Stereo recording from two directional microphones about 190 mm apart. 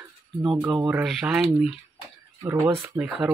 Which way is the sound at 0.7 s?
10° right (ahead or behind).